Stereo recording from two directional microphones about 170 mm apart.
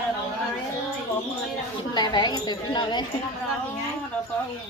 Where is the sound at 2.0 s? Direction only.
25° left (ahead or behind).